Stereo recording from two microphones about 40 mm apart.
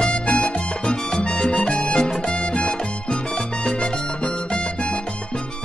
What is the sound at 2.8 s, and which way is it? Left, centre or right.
Salsa music, left.